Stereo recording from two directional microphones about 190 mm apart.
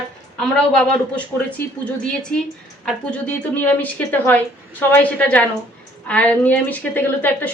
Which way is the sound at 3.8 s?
10° left (ahead or behind).